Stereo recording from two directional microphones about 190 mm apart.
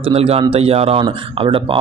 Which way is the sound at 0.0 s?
30° right (ahead or behind).